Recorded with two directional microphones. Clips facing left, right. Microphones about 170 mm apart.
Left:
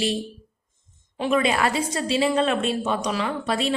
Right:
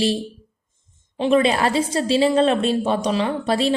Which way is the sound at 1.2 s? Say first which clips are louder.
Right 4 dB; 30° right (ahead or behind).